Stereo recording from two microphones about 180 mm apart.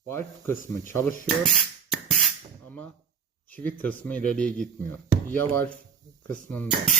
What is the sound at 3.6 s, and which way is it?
Speech, 10° left (ahead or behind).